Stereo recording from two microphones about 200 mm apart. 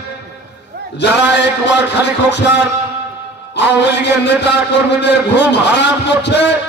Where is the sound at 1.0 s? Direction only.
60° left (ahead or behind).